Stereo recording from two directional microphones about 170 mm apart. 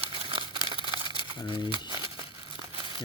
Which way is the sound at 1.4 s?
25° left (ahead or behind).